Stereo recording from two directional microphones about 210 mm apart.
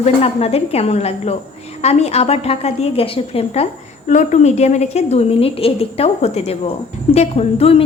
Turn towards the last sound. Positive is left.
turn(degrees=30)  # may be behind; listen again after turning